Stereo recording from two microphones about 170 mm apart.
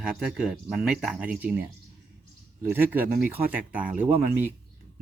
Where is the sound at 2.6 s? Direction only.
10° right (ahead or behind).